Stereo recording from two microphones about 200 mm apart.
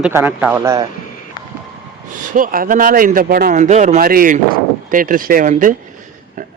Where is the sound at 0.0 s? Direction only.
10° right (ahead or behind).